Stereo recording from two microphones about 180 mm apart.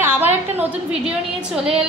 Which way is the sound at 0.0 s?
10° right (ahead or behind).